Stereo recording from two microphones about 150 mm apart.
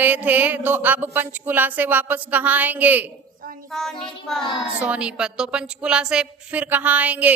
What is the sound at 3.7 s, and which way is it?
Speech, 5° left (ahead or behind).